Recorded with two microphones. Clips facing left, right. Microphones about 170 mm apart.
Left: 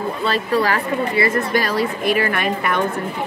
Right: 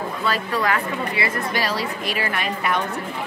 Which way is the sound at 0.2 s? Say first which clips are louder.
Left 4 dB; 30° left (ahead or behind).